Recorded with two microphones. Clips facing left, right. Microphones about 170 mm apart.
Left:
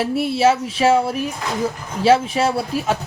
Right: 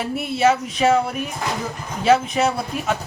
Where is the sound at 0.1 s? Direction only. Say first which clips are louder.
Even; 30° left (ahead or behind).